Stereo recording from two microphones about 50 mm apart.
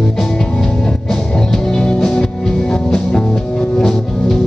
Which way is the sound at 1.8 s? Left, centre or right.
Centre.